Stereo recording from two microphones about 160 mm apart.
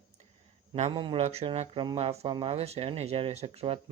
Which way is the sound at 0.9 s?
30° right (ahead or behind).